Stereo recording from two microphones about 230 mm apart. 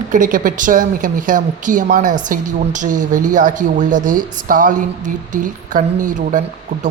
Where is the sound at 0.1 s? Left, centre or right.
Right.